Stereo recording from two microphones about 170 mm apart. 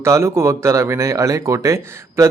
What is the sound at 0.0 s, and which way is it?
Speech, 15° right (ahead or behind).